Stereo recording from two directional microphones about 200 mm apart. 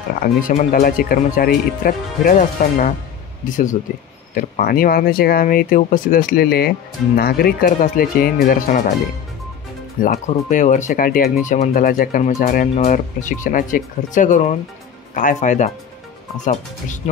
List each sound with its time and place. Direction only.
0.5 s speech: 40° left (ahead or behind)
10.0 s speech: 40° left (ahead or behind)